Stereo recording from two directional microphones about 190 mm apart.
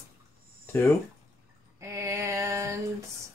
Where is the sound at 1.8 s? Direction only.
15° right (ahead or behind).